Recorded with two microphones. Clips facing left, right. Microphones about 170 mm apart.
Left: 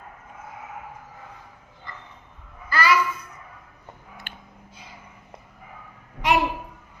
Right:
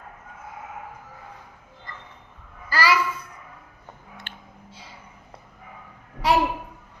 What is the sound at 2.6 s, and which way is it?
Babbling, 35° right (ahead or behind).